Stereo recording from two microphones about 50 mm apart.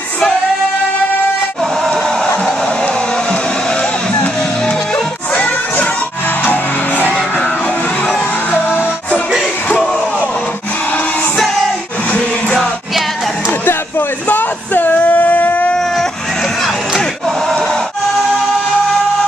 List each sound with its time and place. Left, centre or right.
1.6 s a sound: centre
2.9 s vehicle: centre
5.3 s crowd: left
6.4 s music: left
14.2 s a sound: left
15.8 s baby cry: centre